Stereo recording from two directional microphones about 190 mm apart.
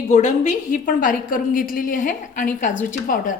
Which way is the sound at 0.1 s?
40° left (ahead or behind).